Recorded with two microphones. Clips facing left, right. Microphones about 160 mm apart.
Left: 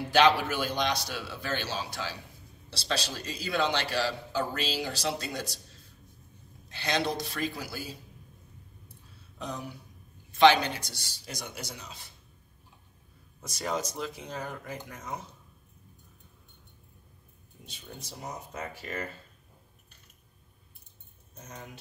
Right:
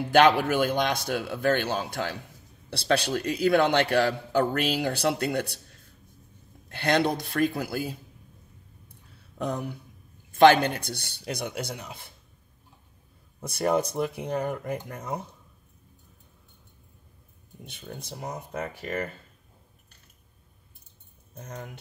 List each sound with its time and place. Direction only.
0.1 s a man's voice: 50° right (ahead or behind)
9.4 s a man's voice: 55° right (ahead or behind)
13.4 s a man's voice: 60° right (ahead or behind)
17.6 s a man's voice: 60° right (ahead or behind)